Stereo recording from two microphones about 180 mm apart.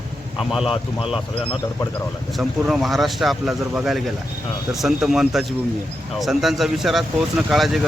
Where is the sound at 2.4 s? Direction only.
Centre (ahead or behind).